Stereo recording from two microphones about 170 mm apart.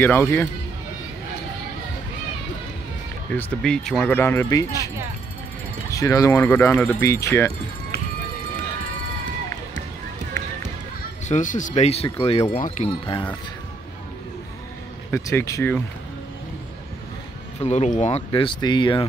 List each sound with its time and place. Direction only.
0.0 s speech: 15° left (ahead or behind)
3.3 s speech: 10° left (ahead or behind)
11.2 s speech: 45° left (ahead or behind)
12.5 s speech: 50° left (ahead or behind)
13.0 s speech: 25° left (ahead or behind)
15.0 s speech: 15° left (ahead or behind)
17.6 s speech: 45° left (ahead or behind)